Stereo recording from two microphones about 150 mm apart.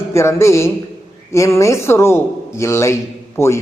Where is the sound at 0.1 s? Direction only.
20° left (ahead or behind).